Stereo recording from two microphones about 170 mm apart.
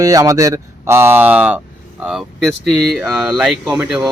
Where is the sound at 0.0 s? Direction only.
20° right (ahead or behind).